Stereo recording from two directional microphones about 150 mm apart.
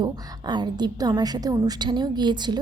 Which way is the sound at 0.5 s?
30° right (ahead or behind).